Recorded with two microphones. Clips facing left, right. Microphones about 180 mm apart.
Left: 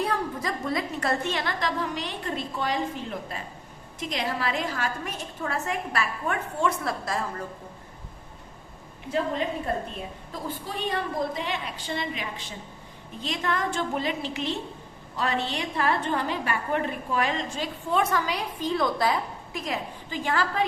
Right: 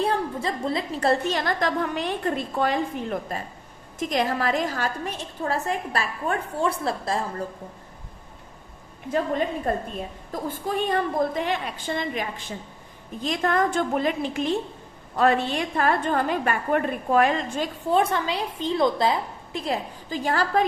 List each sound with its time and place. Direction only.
0.0 s a woman's voice: 30° right (ahead or behind)
10.3 s a woman's voice: 50° right (ahead or behind)
17.9 s a woman's voice: 30° right (ahead or behind)